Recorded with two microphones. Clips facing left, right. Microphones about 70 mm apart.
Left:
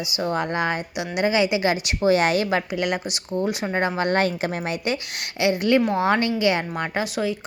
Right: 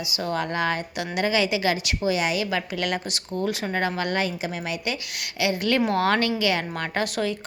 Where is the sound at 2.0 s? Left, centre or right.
Left.